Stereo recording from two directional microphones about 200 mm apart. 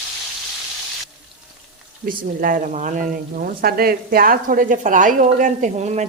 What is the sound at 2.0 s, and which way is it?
A woman's voice, 45° right (ahead or behind).